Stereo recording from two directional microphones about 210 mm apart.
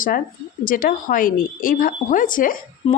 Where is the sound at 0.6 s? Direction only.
40° left (ahead or behind).